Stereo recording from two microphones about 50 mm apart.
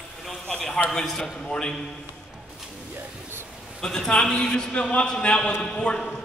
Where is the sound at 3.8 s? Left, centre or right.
Centre.